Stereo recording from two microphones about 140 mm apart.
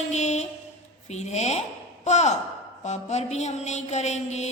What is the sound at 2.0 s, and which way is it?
Speech, 55° left (ahead or behind).